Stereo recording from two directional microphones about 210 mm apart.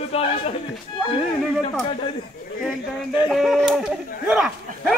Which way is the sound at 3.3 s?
Centre (ahead or behind).